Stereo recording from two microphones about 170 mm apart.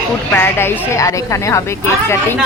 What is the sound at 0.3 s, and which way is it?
Speech, 15° left (ahead or behind).